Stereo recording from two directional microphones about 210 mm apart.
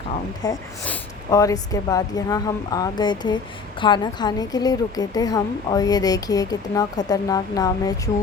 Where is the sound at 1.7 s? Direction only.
15° left (ahead or behind).